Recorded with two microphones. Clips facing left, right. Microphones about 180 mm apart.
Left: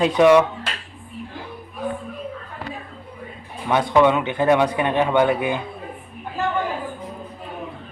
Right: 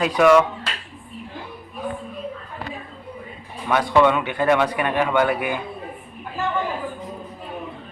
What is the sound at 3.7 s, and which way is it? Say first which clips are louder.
Speech: left 1 dB; 20° left (ahead or behind).